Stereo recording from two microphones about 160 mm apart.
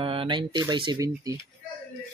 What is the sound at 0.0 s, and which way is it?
Speech, 35° right (ahead or behind).